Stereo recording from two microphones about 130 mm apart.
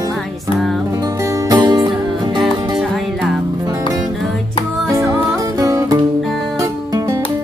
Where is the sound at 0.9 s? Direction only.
25° right (ahead or behind).